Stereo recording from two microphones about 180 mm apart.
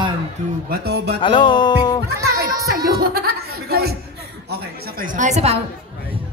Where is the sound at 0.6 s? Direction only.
60° right (ahead or behind).